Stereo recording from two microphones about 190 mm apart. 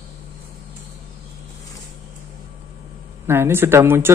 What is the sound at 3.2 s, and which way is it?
Speech, 10° right (ahead or behind).